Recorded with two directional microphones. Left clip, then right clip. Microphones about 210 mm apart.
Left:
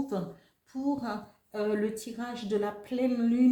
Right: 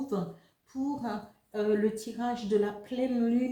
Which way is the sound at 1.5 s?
40° left (ahead or behind).